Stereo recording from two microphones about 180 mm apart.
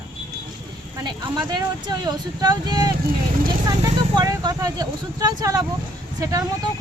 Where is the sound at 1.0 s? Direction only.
25° right (ahead or behind).